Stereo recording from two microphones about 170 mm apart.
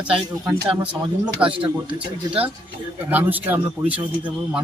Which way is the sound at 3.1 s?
10° right (ahead or behind).